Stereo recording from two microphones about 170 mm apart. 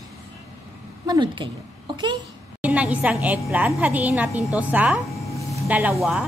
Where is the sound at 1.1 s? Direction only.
25° right (ahead or behind).